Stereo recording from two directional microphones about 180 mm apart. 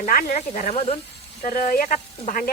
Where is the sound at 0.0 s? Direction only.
50° left (ahead or behind).